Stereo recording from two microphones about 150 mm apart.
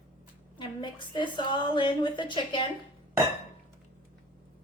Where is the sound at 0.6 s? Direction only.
30° left (ahead or behind).